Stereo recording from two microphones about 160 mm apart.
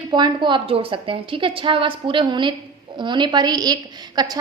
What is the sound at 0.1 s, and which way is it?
A woman's voice, 30° right (ahead or behind).